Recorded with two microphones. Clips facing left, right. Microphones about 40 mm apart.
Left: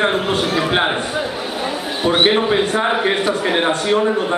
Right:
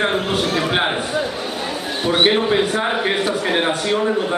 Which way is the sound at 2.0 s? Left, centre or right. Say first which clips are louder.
Left 1 dB; centre.